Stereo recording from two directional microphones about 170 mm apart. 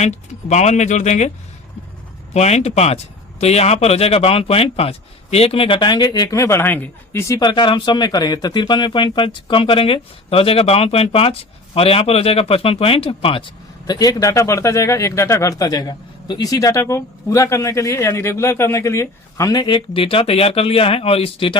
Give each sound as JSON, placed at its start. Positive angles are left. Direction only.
{"t": 0.0, "sound": "speech", "side_deg": 40}
{"t": 2.3, "sound": "speech", "side_deg": 40}